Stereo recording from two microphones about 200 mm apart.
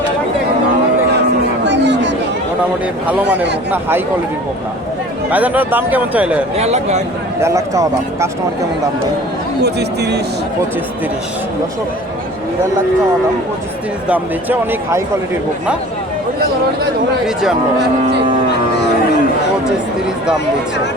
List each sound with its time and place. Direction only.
1.6 s chatter: 60° right (ahead or behind)
2.8 s speech: 5° right (ahead or behind)
5.3 s speech: 10° right (ahead or behind)
6.6 s speech: 35° right (ahead or behind)
7.4 s speech: 15° right (ahead or behind)
9.6 s speech: 55° right (ahead or behind)
14.1 s speech: 10° right (ahead or behind)